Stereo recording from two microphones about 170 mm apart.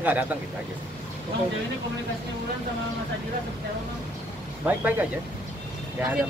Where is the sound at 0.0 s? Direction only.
10° right (ahead or behind).